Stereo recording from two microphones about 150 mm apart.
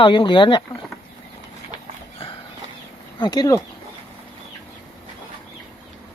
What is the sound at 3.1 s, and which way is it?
Speech, 30° left (ahead or behind).